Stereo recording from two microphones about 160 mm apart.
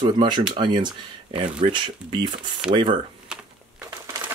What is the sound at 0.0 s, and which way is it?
Speech, 30° right (ahead or behind).